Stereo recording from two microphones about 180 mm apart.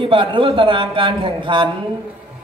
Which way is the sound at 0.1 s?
30° right (ahead or behind).